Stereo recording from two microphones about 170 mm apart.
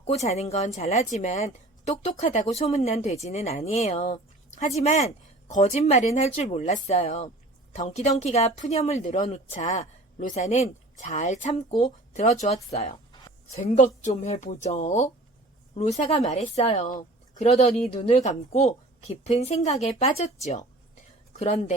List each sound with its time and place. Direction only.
0.0 s speech: 40° left (ahead or behind)
13.6 s speech: 45° left (ahead or behind)
15.7 s speech: 35° left (ahead or behind)